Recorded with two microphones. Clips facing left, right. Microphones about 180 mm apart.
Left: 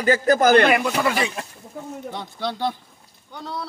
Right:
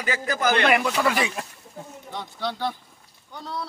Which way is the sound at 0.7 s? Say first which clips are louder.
Left 1 dB; centre (ahead or behind).